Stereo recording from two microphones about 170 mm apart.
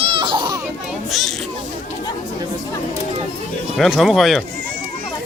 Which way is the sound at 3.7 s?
Centre (ahead or behind).